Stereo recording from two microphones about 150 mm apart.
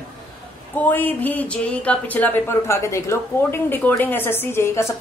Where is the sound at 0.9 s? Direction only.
10° left (ahead or behind).